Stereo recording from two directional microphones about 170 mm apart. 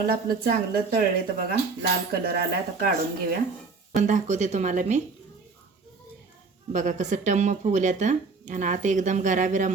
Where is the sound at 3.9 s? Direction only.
45° right (ahead or behind).